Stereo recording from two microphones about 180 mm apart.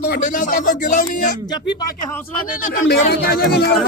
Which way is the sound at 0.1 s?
50° left (ahead or behind).